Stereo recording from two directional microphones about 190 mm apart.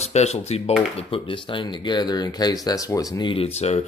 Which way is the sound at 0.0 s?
35° left (ahead or behind).